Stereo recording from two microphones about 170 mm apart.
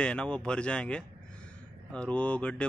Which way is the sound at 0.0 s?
5° left (ahead or behind).